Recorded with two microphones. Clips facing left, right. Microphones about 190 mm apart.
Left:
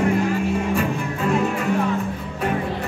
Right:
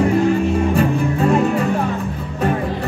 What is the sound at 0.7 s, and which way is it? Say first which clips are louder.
Music: right 6 dB; 35° right (ahead or behind).